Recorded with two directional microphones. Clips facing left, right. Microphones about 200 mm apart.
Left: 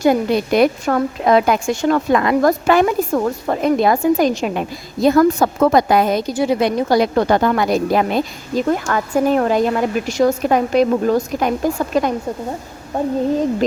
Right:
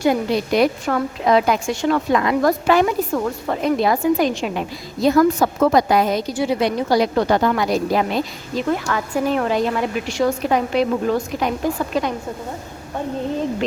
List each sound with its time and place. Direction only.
0.0 s a woman's voice: 50° left (ahead or behind)